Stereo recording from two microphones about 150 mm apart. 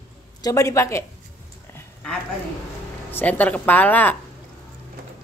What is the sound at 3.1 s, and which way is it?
Speech, 10° left (ahead or behind).